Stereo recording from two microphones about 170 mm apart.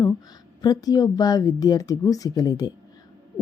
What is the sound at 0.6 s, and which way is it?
A woman's voice, 20° left (ahead or behind).